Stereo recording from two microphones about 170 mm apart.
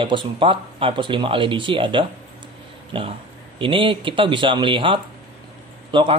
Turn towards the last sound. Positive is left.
turn(degrees=-30)  # may be behind; listen again after turning